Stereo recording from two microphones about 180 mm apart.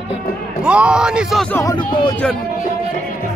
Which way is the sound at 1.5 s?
15° left (ahead or behind).